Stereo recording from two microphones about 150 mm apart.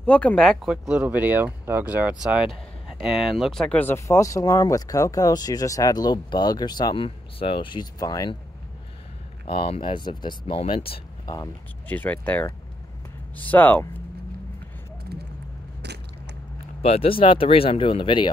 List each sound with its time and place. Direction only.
0.0 s speech: 10° left (ahead or behind); by 8.4 s 25° left (ahead or behind)
9.5 s speech: 35° left (ahead or behind)
11.9 s speech: 10° left (ahead or behind)
16.8 s speech: 40° left (ahead or behind)